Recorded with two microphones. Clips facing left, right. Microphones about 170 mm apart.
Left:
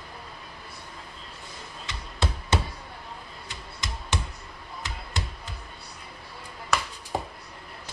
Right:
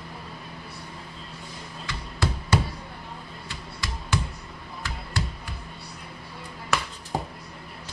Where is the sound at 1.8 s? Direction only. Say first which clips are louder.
Right 2 dB; 20° left (ahead or behind).